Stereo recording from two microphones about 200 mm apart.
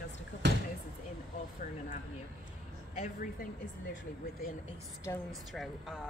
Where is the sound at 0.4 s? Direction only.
60° right (ahead or behind).